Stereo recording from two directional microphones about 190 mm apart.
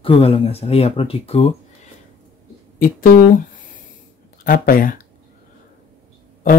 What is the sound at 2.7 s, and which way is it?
Speech, 50° left (ahead or behind).